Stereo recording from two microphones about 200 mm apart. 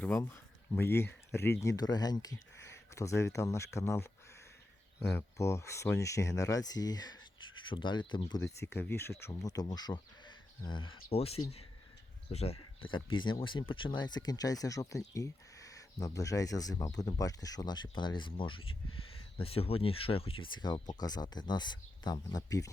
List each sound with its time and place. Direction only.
0.0 s speech: 10° left (ahead or behind)
5.1 s speech: 15° left (ahead or behind)